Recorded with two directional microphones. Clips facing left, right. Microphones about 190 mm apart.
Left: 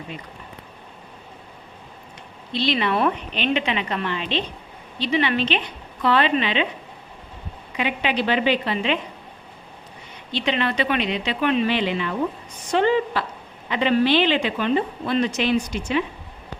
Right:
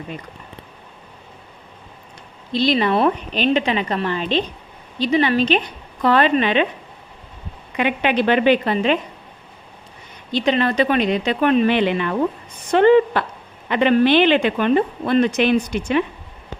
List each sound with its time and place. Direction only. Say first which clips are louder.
2.5 s a woman's voice: right 5 dB; 40° right (ahead or behind)
7.8 s a woman's voice: right 5 dB; 55° right (ahead or behind)
10.3 s a woman's voice: right 5 dB; 40° right (ahead or behind)